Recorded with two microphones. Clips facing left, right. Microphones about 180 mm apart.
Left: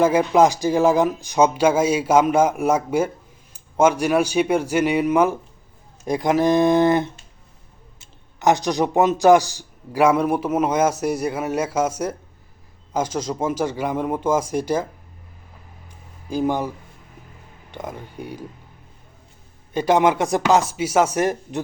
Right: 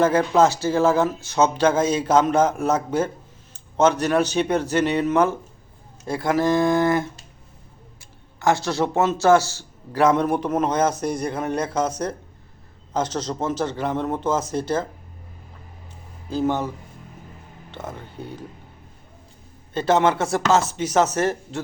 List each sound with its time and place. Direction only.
0.0 s a man's voice: 10° left (ahead or behind)
16.3 s a man's voice: 10° left (ahead or behind)
19.7 s a man's voice: 15° left (ahead or behind)